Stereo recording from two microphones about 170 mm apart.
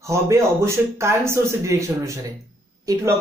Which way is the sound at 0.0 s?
15° right (ahead or behind).